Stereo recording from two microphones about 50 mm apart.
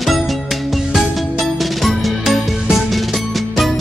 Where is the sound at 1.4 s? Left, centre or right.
Centre.